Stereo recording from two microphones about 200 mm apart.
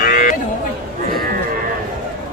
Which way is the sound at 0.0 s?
45° left (ahead or behind).